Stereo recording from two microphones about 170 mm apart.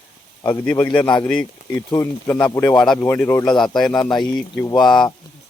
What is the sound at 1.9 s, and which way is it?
Speech, 25° left (ahead or behind).